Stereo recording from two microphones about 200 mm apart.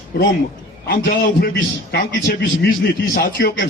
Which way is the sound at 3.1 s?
50° left (ahead or behind).